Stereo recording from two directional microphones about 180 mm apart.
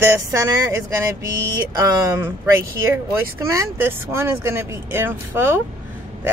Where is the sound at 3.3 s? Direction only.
15° right (ahead or behind).